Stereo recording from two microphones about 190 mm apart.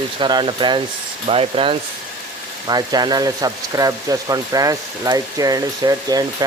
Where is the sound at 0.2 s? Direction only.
25° right (ahead or behind).